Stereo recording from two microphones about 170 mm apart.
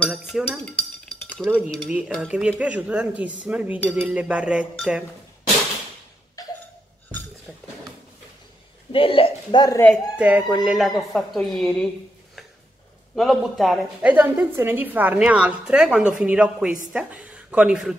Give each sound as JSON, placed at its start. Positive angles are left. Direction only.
{"t": 0.0, "sound": "dishes", "side_deg": 0}
{"t": 1.4, "sound": "a woman's voice", "side_deg": 5}
{"t": 1.9, "sound": "a woman's voice", "side_deg": -5}
{"t": 6.4, "sound": "a sound", "side_deg": 20}
{"t": 8.9, "sound": "speech", "side_deg": 35}
{"t": 10.1, "sound": "a woman's voice", "side_deg": -10}
{"t": 13.1, "sound": "a woman's voice", "side_deg": 0}